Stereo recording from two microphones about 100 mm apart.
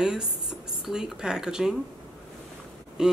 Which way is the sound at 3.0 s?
5° right (ahead or behind).